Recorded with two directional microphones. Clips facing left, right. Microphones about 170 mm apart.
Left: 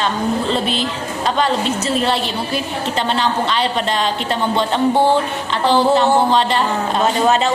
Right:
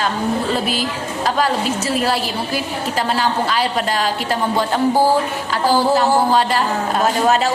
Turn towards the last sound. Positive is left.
turn(degrees=25)  # may be behind; listen again after turning